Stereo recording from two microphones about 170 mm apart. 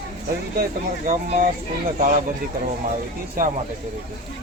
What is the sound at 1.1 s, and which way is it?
Speech, 60° right (ahead or behind).